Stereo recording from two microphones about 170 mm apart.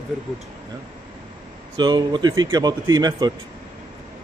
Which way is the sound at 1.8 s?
25° right (ahead or behind).